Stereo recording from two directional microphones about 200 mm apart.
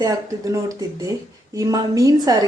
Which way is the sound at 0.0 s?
15° right (ahead or behind).